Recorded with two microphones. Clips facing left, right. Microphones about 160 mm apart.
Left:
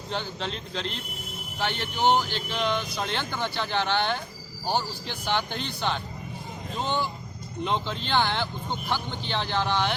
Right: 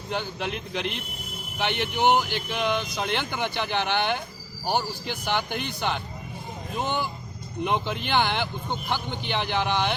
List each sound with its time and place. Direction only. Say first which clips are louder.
0.1 s speech: right 2 dB; 15° right (ahead or behind)